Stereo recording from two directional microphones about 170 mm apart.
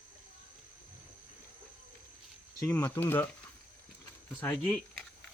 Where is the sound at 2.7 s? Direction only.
10° left (ahead or behind).